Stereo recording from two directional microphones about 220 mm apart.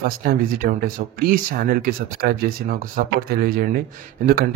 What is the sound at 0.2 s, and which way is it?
Speech, 40° right (ahead or behind).